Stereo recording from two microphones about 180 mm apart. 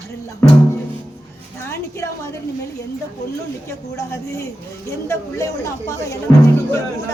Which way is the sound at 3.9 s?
15° left (ahead or behind).